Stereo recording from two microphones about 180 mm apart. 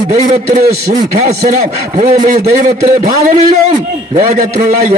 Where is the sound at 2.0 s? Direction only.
45° right (ahead or behind).